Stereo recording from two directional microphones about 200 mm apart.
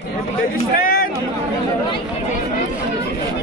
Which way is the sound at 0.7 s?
45° left (ahead or behind).